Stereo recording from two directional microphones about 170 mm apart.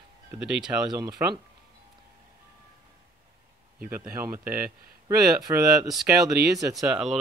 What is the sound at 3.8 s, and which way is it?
Speech, 10° right (ahead or behind).